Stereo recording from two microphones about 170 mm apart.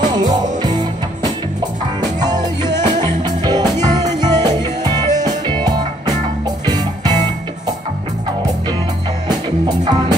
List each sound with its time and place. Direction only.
0.0 s music: 25° right (ahead or behind)
9.3 s music: 25° right (ahead or behind)